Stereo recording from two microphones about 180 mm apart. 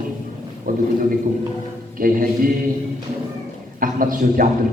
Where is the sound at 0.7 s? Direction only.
50° right (ahead or behind).